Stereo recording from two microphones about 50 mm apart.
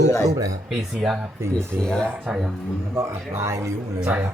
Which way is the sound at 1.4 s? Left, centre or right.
Right.